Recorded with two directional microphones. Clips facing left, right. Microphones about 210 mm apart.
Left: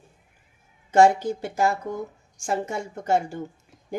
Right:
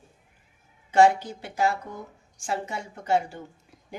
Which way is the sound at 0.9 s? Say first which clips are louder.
Left 2 dB; 45° left (ahead or behind).